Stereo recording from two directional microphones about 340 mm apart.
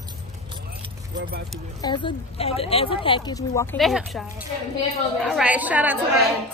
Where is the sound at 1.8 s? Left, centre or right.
Centre.